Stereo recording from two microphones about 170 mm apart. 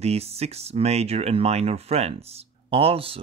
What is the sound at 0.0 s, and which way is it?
Speech, 35° right (ahead or behind).